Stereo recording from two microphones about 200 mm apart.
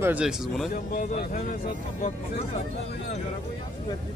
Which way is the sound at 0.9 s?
40° left (ahead or behind).